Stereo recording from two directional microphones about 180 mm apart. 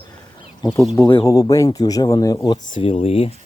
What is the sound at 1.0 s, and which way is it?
Speech, 20° left (ahead or behind).